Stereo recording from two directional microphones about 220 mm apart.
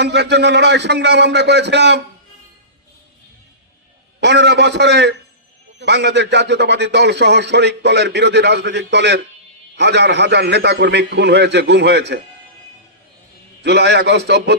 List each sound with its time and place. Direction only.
0.0 s a man's voice: 50° right (ahead or behind)
4.2 s a man's voice: 50° right (ahead or behind)
13.6 s a man's voice: 50° right (ahead or behind)